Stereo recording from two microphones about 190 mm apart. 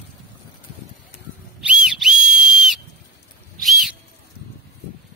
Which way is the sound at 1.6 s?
5° right (ahead or behind).